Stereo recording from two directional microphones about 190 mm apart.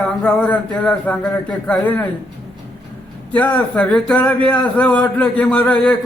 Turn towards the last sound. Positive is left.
turn(degrees=5)  # may be behind; listen again after turning